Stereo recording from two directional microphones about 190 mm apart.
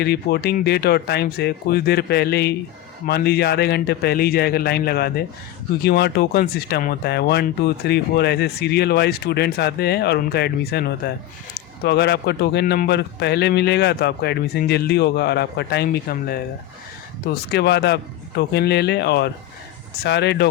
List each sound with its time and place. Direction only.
0.0 s speech: 60° left (ahead or behind)